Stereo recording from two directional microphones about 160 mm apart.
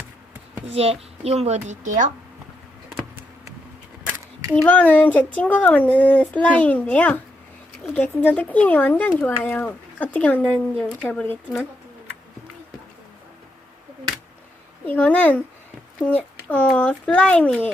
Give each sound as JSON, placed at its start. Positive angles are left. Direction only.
{"t": 0.7, "sound": "a child's voice", "side_deg": -40}
{"t": 4.5, "sound": "speech", "side_deg": 10}
{"t": 14.8, "sound": "speech", "side_deg": 10}